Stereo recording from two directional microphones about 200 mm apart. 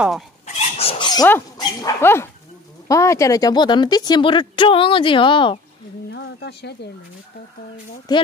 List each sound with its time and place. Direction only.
0.5 s dog: 30° left (ahead or behind)
1.6 s speech: 15° left (ahead or behind)
6.1 s speech: 55° left (ahead or behind)
8.1 s speech: 20° left (ahead or behind)